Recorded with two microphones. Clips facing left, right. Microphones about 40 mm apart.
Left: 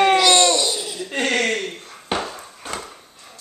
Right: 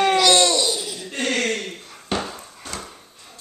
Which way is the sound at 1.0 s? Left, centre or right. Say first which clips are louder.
Left 3 dB; left.